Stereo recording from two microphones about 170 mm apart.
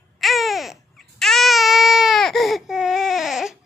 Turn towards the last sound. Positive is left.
turn(degrees=0)  # may be behind; listen again after turning